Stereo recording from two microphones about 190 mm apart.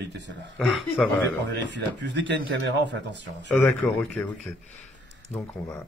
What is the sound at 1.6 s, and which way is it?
Speech, 65° right (ahead or behind).